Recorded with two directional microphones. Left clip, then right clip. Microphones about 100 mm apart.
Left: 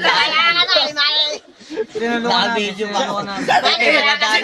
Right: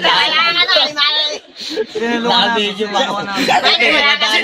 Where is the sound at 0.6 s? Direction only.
25° left (ahead or behind).